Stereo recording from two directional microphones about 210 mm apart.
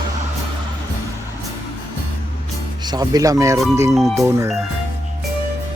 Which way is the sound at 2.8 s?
20° right (ahead or behind).